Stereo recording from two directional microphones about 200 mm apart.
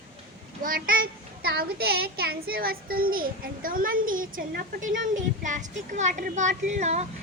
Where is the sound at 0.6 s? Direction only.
45° right (ahead or behind).